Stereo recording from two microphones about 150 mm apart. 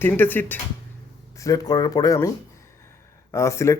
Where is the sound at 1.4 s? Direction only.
25° left (ahead or behind).